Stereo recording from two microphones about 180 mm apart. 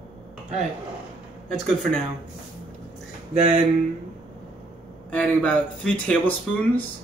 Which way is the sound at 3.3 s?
35° right (ahead or behind).